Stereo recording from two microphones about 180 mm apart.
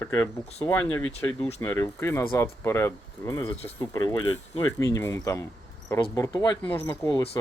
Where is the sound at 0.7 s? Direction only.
10° left (ahead or behind).